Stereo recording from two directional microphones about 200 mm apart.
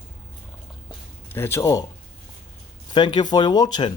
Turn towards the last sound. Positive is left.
turn(degrees=20)  # may be behind; listen again after turning